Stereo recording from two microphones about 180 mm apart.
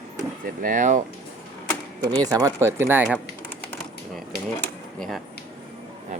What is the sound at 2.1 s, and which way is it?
Speech, 20° right (ahead or behind).